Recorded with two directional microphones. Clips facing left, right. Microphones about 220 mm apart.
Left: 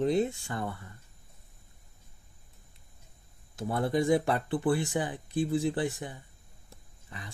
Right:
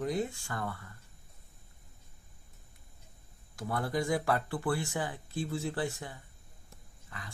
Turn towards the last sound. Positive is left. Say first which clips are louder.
# left 4 dB
turn(degrees=20)  # may be behind; listen again after turning